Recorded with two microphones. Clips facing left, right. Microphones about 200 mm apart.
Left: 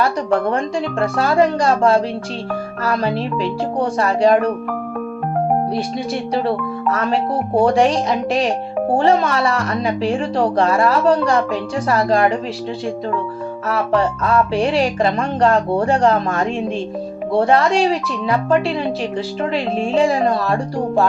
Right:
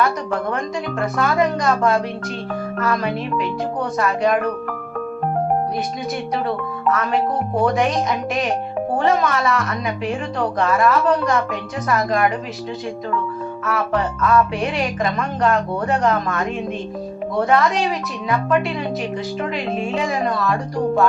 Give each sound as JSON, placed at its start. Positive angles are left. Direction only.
{"t": 0.5, "sound": "music", "side_deg": 30}
{"t": 6.9, "sound": "music", "side_deg": 30}
{"t": 13.7, "sound": "music", "side_deg": 30}